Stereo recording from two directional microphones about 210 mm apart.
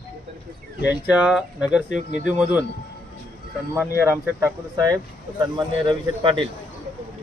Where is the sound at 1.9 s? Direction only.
35° right (ahead or behind).